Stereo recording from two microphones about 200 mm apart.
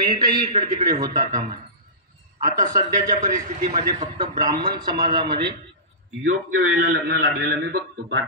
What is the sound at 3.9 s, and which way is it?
A man's voice, 20° right (ahead or behind).